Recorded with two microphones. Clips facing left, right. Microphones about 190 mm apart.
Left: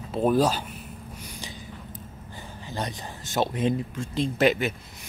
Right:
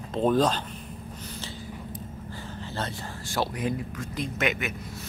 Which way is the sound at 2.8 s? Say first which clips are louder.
Left 2 dB; 20° left (ahead or behind).